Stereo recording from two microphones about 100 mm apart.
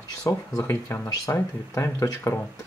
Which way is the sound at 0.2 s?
30° left (ahead or behind).